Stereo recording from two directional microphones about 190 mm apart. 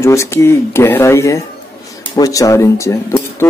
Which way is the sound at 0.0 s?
15° left (ahead or behind).